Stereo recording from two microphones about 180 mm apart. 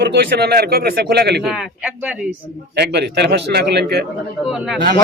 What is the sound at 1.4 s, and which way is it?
Speech, 5° right (ahead or behind).